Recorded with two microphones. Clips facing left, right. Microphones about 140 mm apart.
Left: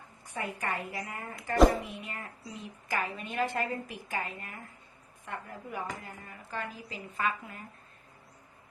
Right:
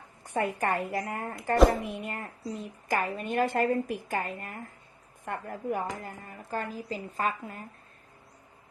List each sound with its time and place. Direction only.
0.3 s a woman's voice: 55° right (ahead or behind)